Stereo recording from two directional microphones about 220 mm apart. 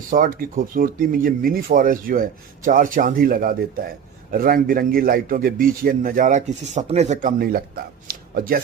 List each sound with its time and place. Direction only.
0.1 s a man's voice: 40° right (ahead or behind)